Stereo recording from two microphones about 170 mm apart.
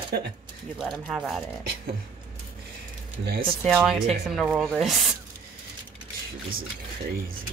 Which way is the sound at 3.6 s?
Centre (ahead or behind).